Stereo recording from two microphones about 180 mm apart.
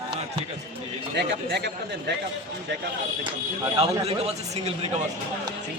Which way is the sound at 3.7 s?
35° right (ahead or behind).